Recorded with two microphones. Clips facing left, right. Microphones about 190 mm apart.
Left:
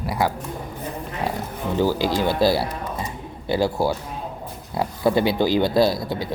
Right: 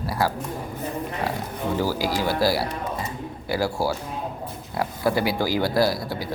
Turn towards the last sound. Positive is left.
turn(degrees=25)  # may be behind; listen again after turning